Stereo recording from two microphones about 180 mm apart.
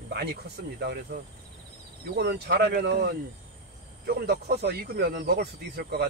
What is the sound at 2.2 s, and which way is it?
Speech, 55° right (ahead or behind).